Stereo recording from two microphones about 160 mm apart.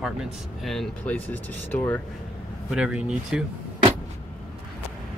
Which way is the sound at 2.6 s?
5° right (ahead or behind).